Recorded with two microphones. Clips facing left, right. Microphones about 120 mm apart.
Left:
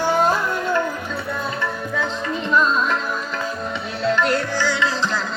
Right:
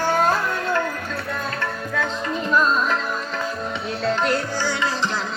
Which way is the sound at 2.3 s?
5° right (ahead or behind).